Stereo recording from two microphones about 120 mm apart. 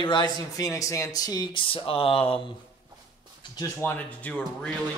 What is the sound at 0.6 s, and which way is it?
Speech, 25° left (ahead or behind).